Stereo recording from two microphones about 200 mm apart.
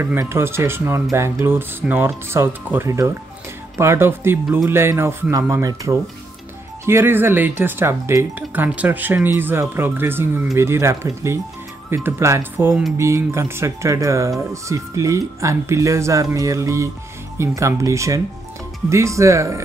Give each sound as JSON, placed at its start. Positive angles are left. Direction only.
{"t": 0.0, "sound": "speech", "side_deg": -10}